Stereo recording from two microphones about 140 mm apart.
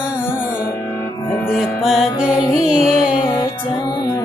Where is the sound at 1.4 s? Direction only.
5° right (ahead or behind).